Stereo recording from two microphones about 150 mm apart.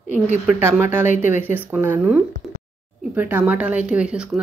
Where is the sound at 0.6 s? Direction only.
15° right (ahead or behind).